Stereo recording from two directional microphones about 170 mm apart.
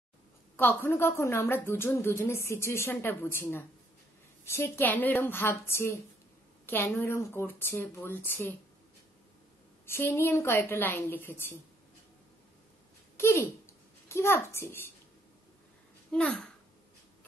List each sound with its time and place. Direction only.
0.6 s a woman's voice: 15° left (ahead or behind)
9.8 s a woman's voice: 15° left (ahead or behind)
13.2 s a woman's voice: 15° left (ahead or behind)
16.1 s speech: 5° left (ahead or behind)